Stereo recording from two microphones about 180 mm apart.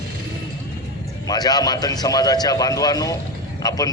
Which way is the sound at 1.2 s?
20° left (ahead or behind).